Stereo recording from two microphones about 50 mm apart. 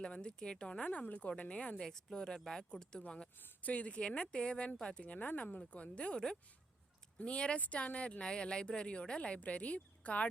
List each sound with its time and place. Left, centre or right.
0.0 s speech: centre
3.4 s speech: left